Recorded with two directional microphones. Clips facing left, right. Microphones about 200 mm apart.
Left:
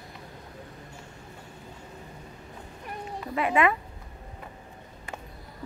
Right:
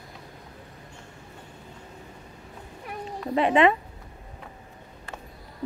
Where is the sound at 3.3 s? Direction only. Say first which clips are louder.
Right 4 dB; 30° right (ahead or behind).